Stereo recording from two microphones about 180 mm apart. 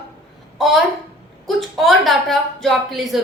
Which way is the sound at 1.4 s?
Centre (ahead or behind).